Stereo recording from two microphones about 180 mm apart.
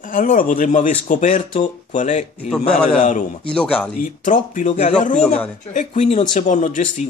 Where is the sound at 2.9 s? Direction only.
45° left (ahead or behind).